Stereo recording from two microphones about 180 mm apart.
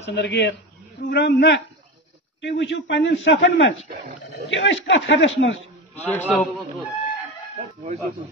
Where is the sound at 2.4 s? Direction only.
85° left.